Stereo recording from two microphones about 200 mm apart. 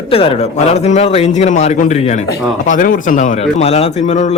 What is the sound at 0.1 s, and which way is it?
A man's voice, 30° left (ahead or behind).